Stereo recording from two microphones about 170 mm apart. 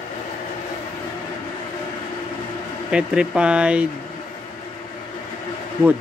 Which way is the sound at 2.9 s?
5° right (ahead or behind).